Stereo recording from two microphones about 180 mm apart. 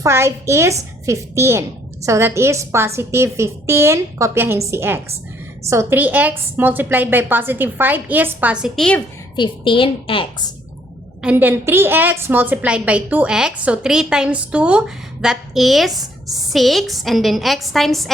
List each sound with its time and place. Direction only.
0.0 s a woman's voice: 15° right (ahead or behind); by 9.0 s centre (ahead or behind)
9.3 s a woman's voice: 25° left (ahead or behind)
11.2 s a woman's voice: 10° right (ahead or behind)